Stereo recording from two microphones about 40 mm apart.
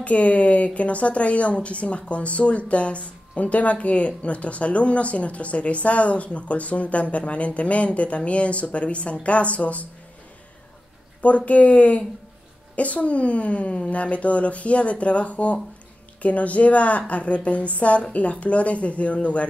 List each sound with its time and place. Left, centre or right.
0.0 s speech: left
11.1 s speech: left